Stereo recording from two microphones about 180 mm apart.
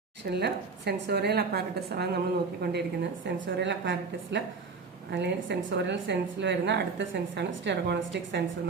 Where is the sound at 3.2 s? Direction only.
85° right.